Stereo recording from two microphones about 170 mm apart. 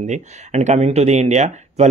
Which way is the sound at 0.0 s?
45° right (ahead or behind).